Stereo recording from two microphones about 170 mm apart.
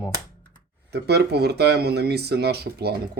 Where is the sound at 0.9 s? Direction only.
75° right (ahead or behind).